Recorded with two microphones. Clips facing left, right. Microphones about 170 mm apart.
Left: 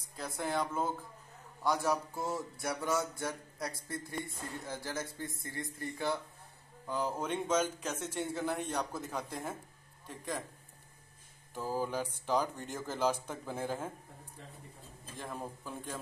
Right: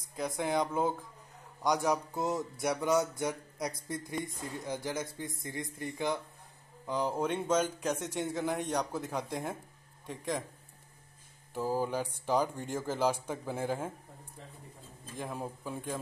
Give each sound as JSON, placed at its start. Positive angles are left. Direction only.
{"t": 0.2, "sound": "speech", "side_deg": -15}
{"t": 11.5, "sound": "speech", "side_deg": -10}
{"t": 15.1, "sound": "speech", "side_deg": -10}